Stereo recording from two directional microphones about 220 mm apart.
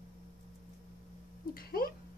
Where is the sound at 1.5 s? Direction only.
40° left (ahead or behind).